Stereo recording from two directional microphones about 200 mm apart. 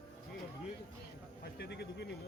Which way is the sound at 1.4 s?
55° left (ahead or behind).